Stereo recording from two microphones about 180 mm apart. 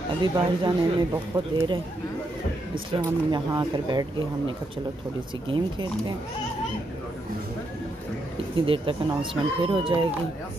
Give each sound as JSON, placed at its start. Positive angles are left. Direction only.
{"t": 0.2, "sound": "speech", "side_deg": -20}
{"t": 3.0, "sound": "speech", "side_deg": -25}
{"t": 8.5, "sound": "speech", "side_deg": -30}